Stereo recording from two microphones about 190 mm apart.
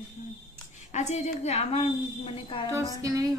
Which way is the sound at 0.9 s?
35° left (ahead or behind).